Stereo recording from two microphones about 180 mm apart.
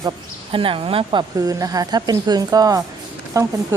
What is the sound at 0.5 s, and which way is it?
Speech, 30° right (ahead or behind).